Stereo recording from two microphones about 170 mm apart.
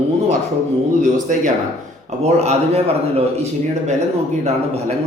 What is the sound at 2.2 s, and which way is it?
Speech, 40° right (ahead or behind).